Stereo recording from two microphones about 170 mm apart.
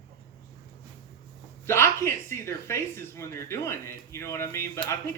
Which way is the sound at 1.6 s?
15° left (ahead or behind).